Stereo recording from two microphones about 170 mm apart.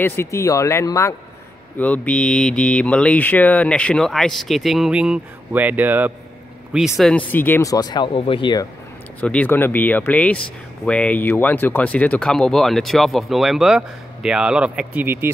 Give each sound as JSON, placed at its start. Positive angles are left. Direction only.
{"t": 0.0, "sound": "speech", "side_deg": 15}
{"t": 7.0, "sound": "speech", "side_deg": 5}
{"t": 9.2, "sound": "speech", "side_deg": 10}